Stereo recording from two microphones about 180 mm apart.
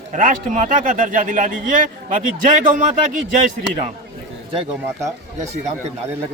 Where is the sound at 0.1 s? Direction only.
45° right (ahead or behind).